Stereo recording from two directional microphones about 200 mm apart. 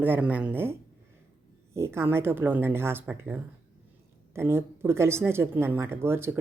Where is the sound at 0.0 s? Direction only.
10° right (ahead or behind).